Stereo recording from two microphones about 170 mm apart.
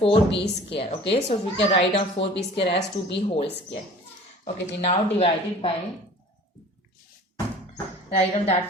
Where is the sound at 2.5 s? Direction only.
90° left.